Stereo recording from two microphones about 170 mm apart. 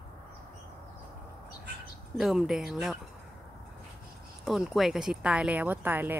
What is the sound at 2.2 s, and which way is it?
Speech, centre (ahead or behind).